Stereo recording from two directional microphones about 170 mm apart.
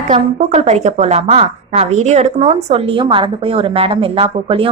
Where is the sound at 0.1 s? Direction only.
45° right (ahead or behind).